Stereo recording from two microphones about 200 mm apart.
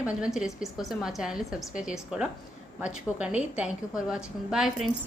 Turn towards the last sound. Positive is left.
turn(degrees=0)  # may be behind; listen again after turning